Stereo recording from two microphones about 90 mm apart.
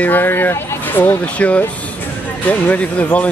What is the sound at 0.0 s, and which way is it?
Speech, 20° left (ahead or behind).